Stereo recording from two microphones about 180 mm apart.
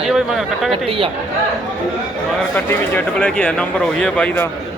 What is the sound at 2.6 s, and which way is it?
Speech, 10° left (ahead or behind).